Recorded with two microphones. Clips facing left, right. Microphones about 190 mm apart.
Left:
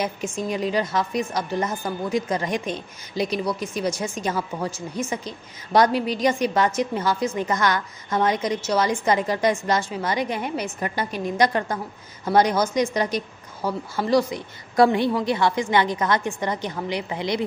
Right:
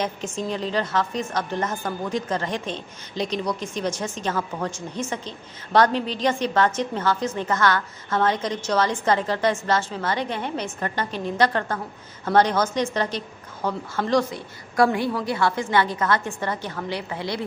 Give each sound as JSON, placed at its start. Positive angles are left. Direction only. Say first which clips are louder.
{"t": 0.0, "sound": "a woman's voice", "louder": "left 1 dB", "side_deg": 10}
{"t": 14.8, "sound": "a woman's voice", "louder": "left 3 dB", "side_deg": 20}